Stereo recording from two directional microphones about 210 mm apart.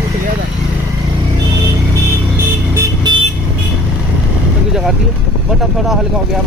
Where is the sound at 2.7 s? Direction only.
20° right (ahead or behind).